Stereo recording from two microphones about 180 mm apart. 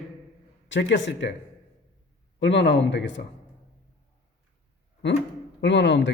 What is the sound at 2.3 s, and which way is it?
Speech, 80° left.